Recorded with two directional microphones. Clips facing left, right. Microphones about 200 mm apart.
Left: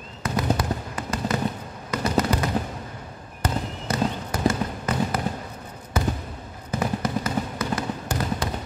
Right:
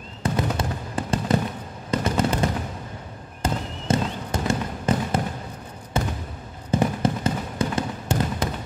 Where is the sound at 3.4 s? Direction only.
25° right (ahead or behind).